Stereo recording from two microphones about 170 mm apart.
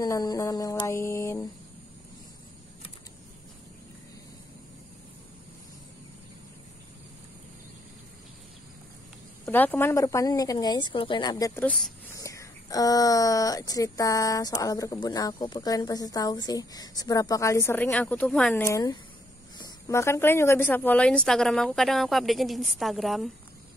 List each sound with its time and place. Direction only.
0.0 s speech: 20° left (ahead or behind)
9.5 s speech: 10° left (ahead or behind)
11.6 s speech: 5° left (ahead or behind)
12.2 s speech: 20° left (ahead or behind); by 23.3 s centre (ahead or behind)